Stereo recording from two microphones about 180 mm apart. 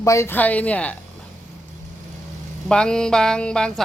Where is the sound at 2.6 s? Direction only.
5° left (ahead or behind).